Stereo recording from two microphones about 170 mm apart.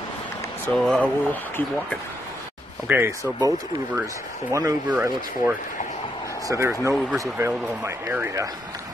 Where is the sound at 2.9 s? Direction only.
15° right (ahead or behind).